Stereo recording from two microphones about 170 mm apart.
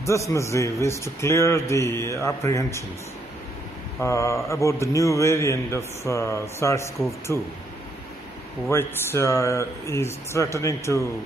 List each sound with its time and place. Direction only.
0.0 s a man's voice: 15° left (ahead or behind)
4.0 s a man's voice: 15° left (ahead or behind)
8.6 s a man's voice: 15° left (ahead or behind)